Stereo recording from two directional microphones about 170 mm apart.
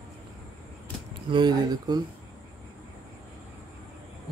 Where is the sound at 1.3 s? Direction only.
25° right (ahead or behind).